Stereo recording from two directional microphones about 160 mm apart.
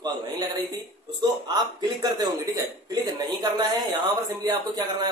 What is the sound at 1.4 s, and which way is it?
Speech, 25° right (ahead or behind).